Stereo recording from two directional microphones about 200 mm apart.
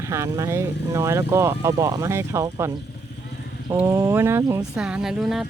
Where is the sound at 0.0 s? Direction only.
15° right (ahead or behind).